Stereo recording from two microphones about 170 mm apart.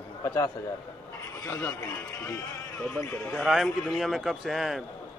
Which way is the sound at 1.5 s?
15° left (ahead or behind).